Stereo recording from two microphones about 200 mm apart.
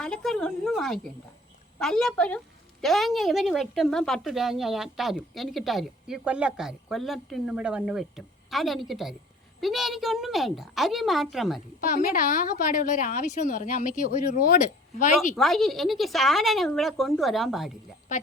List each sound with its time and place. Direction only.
0.0 s a woman's voice: 5° left (ahead or behind)
11.8 s a woman's voice: 45° left (ahead or behind)
15.4 s a woman's voice: centre (ahead or behind)